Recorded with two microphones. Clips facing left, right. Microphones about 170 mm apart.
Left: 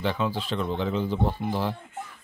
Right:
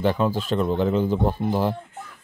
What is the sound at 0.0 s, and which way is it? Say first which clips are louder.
Speech: right 5 dB; 45° right (ahead or behind).